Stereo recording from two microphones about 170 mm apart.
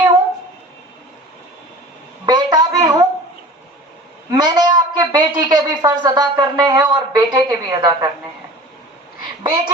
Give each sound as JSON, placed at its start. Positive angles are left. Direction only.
{"t": 2.2, "sound": "a sound", "side_deg": -25}
{"t": 4.3, "sound": "a woman's voice", "side_deg": -25}
{"t": 9.4, "sound": "a child's voice", "side_deg": -25}